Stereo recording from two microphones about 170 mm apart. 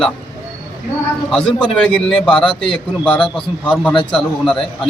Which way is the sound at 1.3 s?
5° left (ahead or behind).